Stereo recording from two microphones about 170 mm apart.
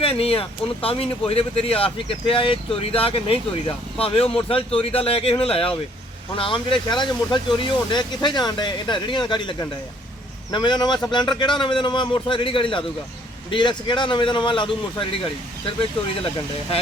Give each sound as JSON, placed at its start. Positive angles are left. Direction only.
{"t": 0.0, "sound": "speech", "side_deg": 35}